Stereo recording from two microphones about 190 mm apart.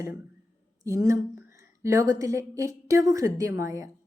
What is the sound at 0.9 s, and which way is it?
A woman's voice, 15° right (ahead or behind).